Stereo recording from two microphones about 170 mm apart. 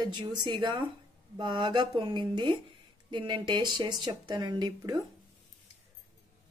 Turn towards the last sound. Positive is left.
turn(degrees=-25)  # may be behind; listen again after turning